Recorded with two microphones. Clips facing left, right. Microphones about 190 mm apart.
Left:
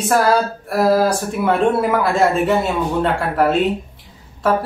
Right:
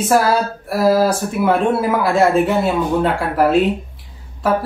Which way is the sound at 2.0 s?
Centre (ahead or behind).